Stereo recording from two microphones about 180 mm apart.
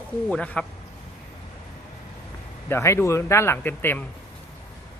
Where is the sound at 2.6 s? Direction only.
15° left (ahead or behind).